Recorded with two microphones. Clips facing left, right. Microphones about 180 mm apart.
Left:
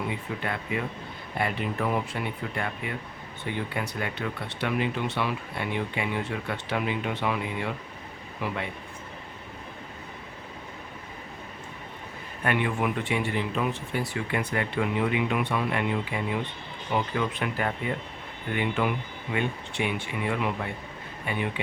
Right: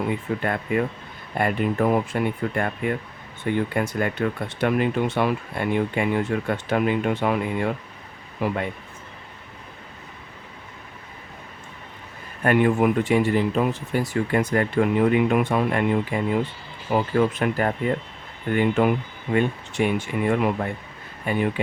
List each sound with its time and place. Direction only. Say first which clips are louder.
0.1 s speech: right 7 dB; 50° right (ahead or behind)
12.4 s speech: right 8 dB; 45° right (ahead or behind)